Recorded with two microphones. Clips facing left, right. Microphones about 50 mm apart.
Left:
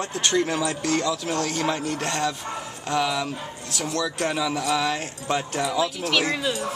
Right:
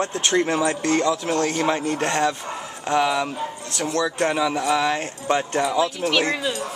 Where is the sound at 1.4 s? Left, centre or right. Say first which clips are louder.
Right 4 dB; right.